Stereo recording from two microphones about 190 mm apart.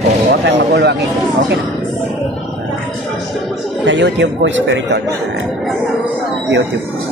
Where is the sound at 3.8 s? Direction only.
70° right (ahead or behind).